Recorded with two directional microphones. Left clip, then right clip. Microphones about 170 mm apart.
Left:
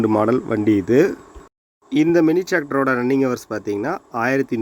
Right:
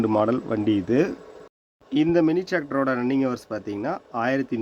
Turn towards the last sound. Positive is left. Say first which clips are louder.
# left 5 dB
turn(degrees=20)  # may be behind; listen again after turning